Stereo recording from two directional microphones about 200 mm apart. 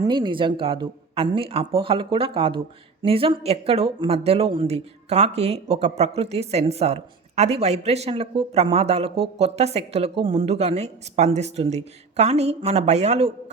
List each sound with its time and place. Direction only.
0.0 s speech: 25° right (ahead or behind)